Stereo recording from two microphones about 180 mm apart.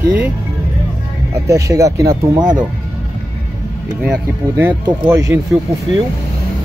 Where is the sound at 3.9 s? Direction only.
5° right (ahead or behind).